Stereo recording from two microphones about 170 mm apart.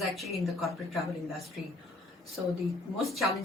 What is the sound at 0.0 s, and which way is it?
Speech, centre (ahead or behind).